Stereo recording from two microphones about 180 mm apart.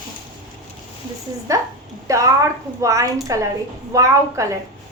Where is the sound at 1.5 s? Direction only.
15° right (ahead or behind).